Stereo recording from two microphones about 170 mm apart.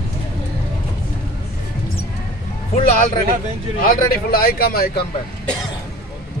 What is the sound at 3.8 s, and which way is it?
Speech, 60° left (ahead or behind).